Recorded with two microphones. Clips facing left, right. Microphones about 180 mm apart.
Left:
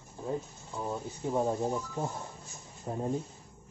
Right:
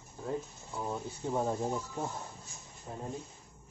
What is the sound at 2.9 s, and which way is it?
Speech, 45° left (ahead or behind).